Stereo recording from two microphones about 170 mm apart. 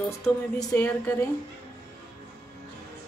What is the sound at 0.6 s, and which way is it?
Speech, 15° left (ahead or behind).